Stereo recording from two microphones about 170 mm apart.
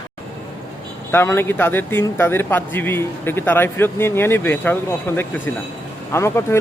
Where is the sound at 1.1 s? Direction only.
15° left (ahead or behind).